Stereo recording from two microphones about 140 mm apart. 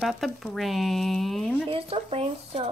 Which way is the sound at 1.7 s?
45° right (ahead or behind).